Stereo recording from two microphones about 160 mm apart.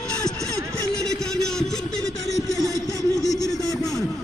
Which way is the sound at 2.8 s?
20° left (ahead or behind).